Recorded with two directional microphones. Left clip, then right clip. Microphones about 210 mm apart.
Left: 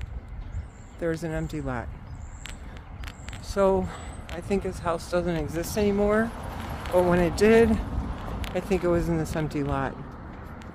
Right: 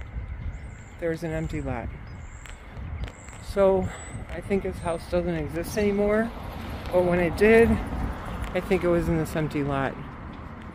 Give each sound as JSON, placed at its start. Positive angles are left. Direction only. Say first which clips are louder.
{"t": 1.0, "sound": "speech", "louder": "even", "side_deg": 5}
{"t": 3.5, "sound": "speech", "louder": "right 2 dB", "side_deg": 0}
{"t": 8.0, "sound": "a sound", "louder": "right 2 dB", "side_deg": -55}
{"t": 8.5, "sound": "speech", "louder": "right 2 dB", "side_deg": 0}